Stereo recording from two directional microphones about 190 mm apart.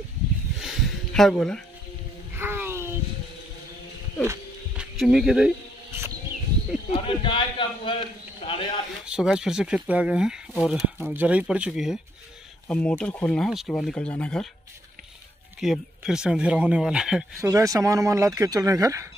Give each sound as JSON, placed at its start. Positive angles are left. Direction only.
{"t": 0.6, "sound": "a sound", "side_deg": 0}
{"t": 2.3, "sound": "a sound", "side_deg": -10}
{"t": 4.2, "sound": "music", "side_deg": -10}
{"t": 4.9, "sound": "speech", "side_deg": 0}
{"t": 6.9, "sound": "a man's voice", "side_deg": 25}
{"t": 9.0, "sound": "speech", "side_deg": -5}
{"t": 15.6, "sound": "speech", "side_deg": 0}
{"t": 17.4, "sound": "speech", "side_deg": -15}